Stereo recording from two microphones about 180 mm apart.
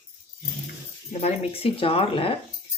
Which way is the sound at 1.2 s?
35° left (ahead or behind).